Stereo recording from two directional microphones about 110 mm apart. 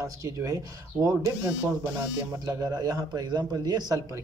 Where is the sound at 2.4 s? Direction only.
30° right (ahead or behind).